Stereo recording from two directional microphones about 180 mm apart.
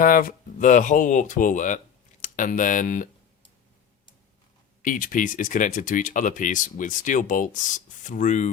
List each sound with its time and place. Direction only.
0.0 s speech: 50° left (ahead or behind)
4.8 s speech: 45° left (ahead or behind)